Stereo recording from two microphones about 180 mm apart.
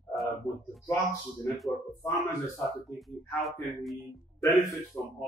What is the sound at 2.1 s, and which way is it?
A man's voice, centre (ahead or behind).